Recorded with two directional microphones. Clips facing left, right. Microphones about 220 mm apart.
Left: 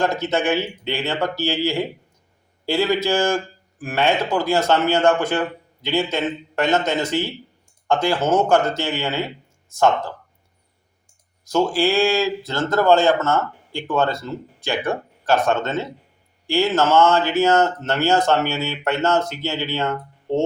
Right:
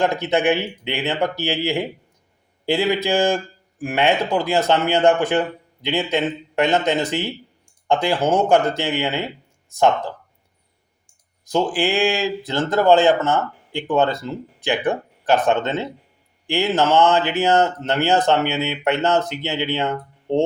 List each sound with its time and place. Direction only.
0.0 s speech: 15° right (ahead or behind)
11.4 s speech: 15° right (ahead or behind)